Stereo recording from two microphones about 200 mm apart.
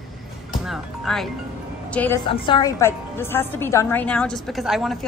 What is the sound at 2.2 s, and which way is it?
A woman's voice, 25° left (ahead or behind).